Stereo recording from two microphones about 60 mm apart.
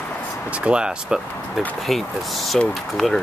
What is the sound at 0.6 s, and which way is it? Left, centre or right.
Speech, centre.